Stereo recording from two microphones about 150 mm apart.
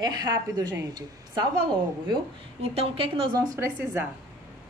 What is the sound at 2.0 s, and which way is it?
A woman's voice, 35° right (ahead or behind).